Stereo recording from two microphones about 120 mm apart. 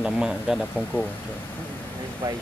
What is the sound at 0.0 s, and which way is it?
Speech, 5° right (ahead or behind).